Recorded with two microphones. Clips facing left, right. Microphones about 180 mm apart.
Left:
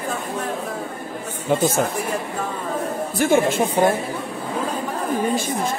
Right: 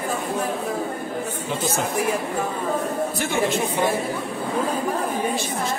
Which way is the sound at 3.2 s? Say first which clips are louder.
Left 9 dB; 45° left (ahead or behind).